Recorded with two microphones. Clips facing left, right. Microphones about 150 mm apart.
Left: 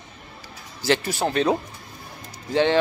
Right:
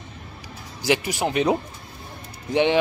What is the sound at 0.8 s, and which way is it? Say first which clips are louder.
Speech: even; 15° right (ahead or behind).